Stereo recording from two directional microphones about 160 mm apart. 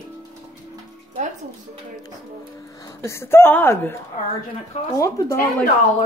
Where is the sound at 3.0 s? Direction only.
15° left (ahead or behind).